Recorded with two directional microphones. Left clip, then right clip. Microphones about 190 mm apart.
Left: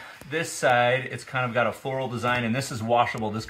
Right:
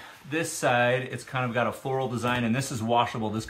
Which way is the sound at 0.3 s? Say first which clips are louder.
Left 3 dB; 20° left (ahead or behind).